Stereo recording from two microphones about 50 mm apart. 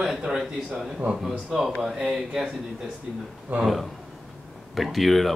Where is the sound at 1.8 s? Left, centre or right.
Centre.